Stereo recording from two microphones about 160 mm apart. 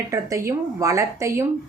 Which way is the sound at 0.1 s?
20° right (ahead or behind).